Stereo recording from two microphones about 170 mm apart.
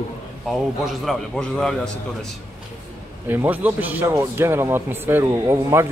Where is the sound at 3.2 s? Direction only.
10° right (ahead or behind).